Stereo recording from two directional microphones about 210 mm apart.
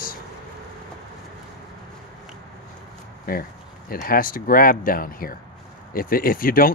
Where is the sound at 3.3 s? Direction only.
45° left (ahead or behind).